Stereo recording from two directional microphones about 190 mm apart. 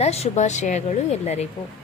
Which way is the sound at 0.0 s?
35° left (ahead or behind).